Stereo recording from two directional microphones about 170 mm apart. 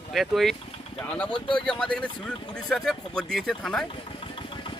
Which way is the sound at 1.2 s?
30° left (ahead or behind).